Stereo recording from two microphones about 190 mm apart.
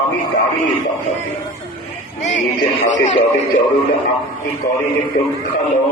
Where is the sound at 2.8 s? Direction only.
40° left (ahead or behind).